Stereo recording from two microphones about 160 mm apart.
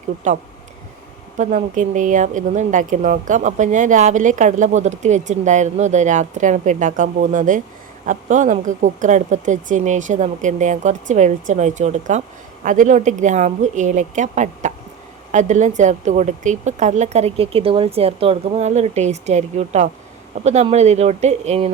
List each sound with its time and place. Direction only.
0.3 s speech: 50° right (ahead or behind)